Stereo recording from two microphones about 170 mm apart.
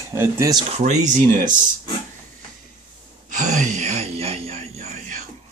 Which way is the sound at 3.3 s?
45° right (ahead or behind).